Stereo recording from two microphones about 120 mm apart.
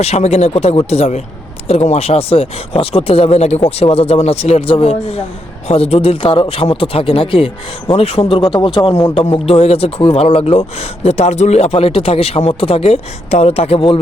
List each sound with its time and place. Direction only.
0.0 s a man's voice: 60° left (ahead or behind)